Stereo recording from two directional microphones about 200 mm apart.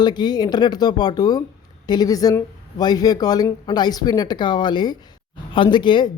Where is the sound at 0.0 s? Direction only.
20° left (ahead or behind).